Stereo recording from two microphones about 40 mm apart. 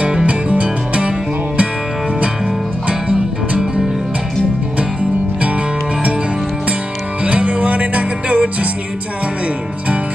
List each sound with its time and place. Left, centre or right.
0.3 s music: right
2.9 s music: right
7.2 s music: right